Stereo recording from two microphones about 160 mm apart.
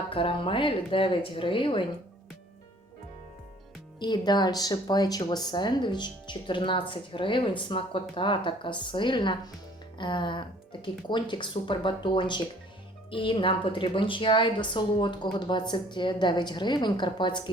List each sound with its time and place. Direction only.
0.1 s a woman's voice: 35° left (ahead or behind)
4.0 s a woman's voice: 25° left (ahead or behind)